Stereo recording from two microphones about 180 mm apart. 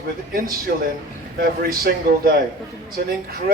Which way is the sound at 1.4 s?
55° right (ahead or behind).